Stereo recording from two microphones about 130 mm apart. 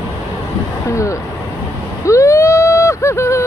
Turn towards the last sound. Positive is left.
turn(degrees=20)  # may be behind; listen again after turning